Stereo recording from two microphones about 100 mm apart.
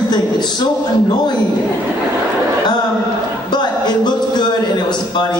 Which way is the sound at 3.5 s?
45° left (ahead or behind).